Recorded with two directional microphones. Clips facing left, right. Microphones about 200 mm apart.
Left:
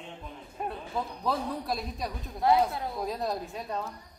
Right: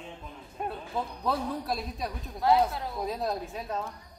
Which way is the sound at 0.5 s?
Centre (ahead or behind).